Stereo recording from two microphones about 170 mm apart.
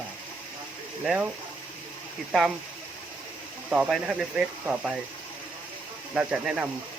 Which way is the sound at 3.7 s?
5° right (ahead or behind).